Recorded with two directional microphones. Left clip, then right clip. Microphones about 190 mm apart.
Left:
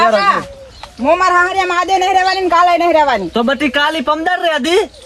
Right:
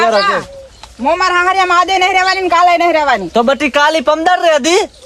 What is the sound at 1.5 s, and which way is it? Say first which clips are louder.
A man's voice: right 3 dB; centre (ahead or behind).